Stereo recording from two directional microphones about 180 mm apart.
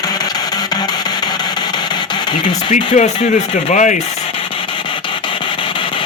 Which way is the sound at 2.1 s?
25° left (ahead or behind).